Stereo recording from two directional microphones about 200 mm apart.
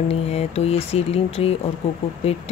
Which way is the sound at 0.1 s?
30° left (ahead or behind).